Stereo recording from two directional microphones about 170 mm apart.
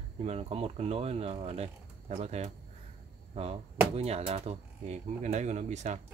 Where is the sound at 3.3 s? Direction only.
35° right (ahead or behind).